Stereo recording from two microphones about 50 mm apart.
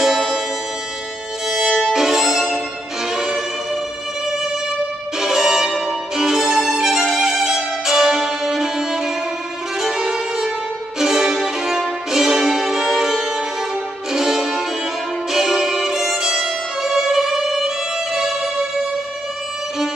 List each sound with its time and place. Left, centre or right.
0.0 s music: centre
1.5 s violin: centre
3.1 s music: centre
5.2 s music: centre
11.0 s violin: centre
12.1 s music: centre